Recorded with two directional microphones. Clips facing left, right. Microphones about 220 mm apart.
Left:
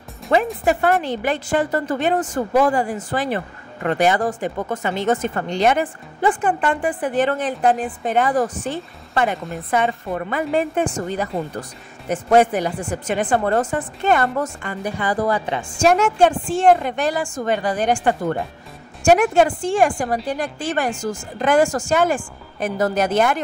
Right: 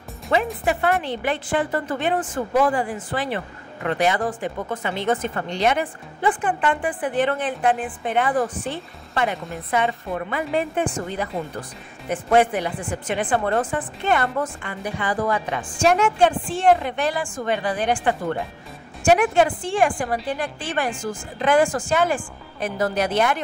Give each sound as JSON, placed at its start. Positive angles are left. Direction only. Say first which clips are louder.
{"t": 0.3, "sound": "a woman's voice", "louder": "left 4 dB", "side_deg": 45}
{"t": 12.1, "sound": "speech", "louder": "left 3 dB", "side_deg": 40}